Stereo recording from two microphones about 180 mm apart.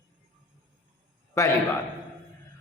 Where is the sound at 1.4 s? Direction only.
15° left (ahead or behind).